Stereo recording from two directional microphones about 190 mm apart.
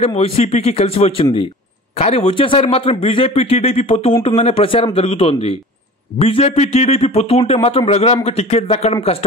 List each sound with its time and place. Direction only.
0.0 s a man's voice: 30° left (ahead or behind)